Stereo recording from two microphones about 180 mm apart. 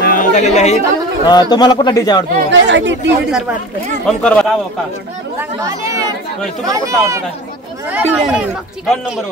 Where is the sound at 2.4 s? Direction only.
90° right.